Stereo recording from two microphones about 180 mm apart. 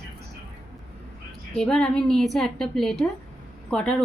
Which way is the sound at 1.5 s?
5° left (ahead or behind).